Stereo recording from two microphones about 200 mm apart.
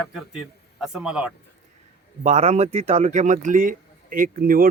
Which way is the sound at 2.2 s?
30° right (ahead or behind).